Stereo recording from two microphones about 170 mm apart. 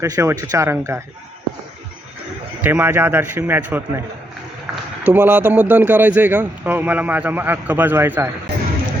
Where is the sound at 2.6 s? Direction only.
10° right (ahead or behind).